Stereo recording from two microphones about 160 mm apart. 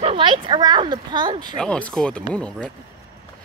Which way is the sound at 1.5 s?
5° left (ahead or behind).